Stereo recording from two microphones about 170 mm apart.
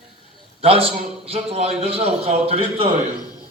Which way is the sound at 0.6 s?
35° right (ahead or behind).